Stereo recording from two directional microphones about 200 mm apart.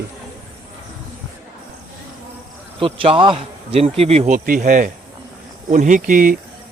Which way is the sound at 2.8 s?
25° right (ahead or behind).